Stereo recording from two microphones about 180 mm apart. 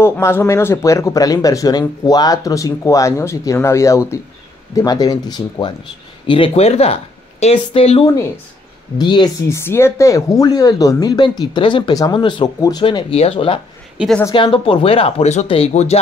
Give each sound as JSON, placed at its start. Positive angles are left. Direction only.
{"t": 0.0, "sound": "speech", "side_deg": 15}
{"t": 9.6, "sound": "speech", "side_deg": 15}
{"t": 13.9, "sound": "a woman's voice", "side_deg": 0}
{"t": 14.3, "sound": "speech", "side_deg": 30}